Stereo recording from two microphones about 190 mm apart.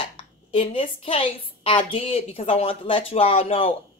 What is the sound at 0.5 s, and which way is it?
A woman's voice, 30° left (ahead or behind).